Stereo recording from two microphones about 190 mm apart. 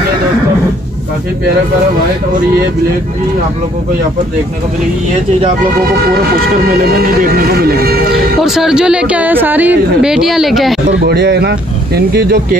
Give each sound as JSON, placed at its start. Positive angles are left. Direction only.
{"t": 6.6, "sound": "speech", "side_deg": -55}
{"t": 8.5, "sound": "a woman's voice", "side_deg": -5}
{"t": 10.9, "sound": "speech", "side_deg": -60}